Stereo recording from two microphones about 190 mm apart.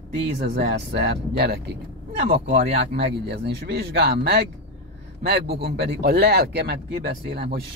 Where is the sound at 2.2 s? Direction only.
35° right (ahead or behind).